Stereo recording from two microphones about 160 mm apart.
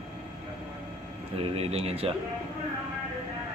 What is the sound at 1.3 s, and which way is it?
Speech, 40° right (ahead or behind).